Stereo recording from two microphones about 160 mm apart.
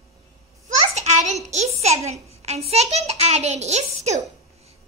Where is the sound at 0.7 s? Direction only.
45° right (ahead or behind).